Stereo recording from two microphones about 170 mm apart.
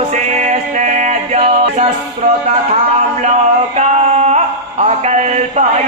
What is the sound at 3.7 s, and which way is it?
Mantra, 45° right (ahead or behind).